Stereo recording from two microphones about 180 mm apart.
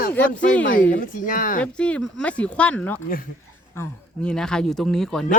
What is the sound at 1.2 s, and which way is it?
Speech, 50° left (ahead or behind).